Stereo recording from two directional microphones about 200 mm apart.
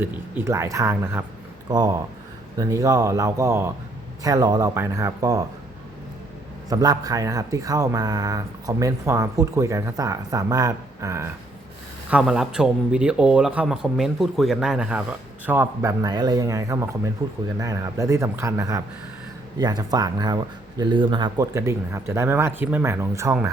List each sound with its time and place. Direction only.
0.0 s speech: 10° right (ahead or behind)
2.6 s speech: 15° right (ahead or behind)
6.7 s speech: 20° right (ahead or behind)
12.1 s speech: 5° right (ahead or behind)